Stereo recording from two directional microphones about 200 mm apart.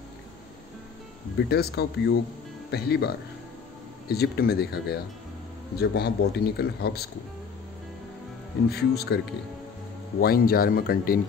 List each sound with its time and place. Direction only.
1.5 s a man's voice: 55° left (ahead or behind)
4.1 s a man's voice: 50° left (ahead or behind)
8.6 s a man's voice: 55° left (ahead or behind)
10.2 s a man's voice: 45° left (ahead or behind)